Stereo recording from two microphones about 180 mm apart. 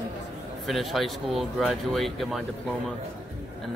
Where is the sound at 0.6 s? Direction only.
Centre (ahead or behind).